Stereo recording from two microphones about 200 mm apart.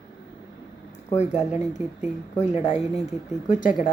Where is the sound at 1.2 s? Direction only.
35° left (ahead or behind).